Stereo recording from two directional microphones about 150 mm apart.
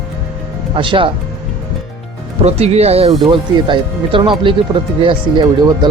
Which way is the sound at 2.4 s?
45° right (ahead or behind).